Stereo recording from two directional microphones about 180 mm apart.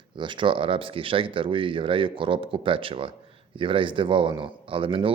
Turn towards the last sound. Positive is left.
turn(degrees=-30)  # may be behind; listen again after turning